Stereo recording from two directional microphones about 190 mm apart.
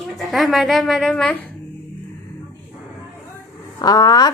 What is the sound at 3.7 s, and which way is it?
Speech, 20° left (ahead or behind).